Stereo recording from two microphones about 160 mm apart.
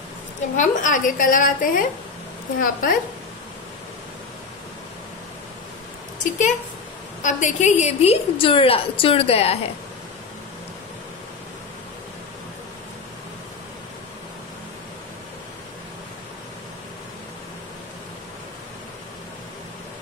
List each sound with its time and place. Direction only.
0.6 s a woman's voice: 55° left (ahead or behind)
6.2 s a woman's voice: 50° left (ahead or behind)